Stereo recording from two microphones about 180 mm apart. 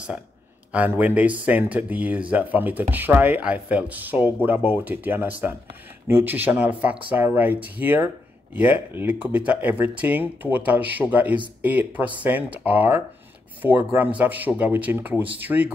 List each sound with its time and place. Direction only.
0.7 s speech: 10° right (ahead or behind)